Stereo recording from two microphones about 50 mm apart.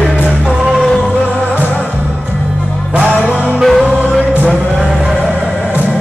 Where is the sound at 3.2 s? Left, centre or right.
Right.